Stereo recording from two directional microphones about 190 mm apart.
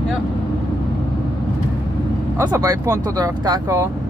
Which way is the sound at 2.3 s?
15° right (ahead or behind).